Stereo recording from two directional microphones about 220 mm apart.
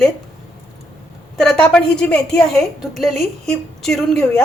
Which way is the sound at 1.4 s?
5° left (ahead or behind).